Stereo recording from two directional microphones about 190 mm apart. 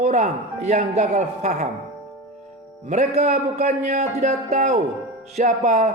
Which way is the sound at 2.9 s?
35° right (ahead or behind).